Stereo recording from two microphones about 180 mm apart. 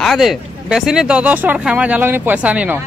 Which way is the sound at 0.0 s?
Centre (ahead or behind).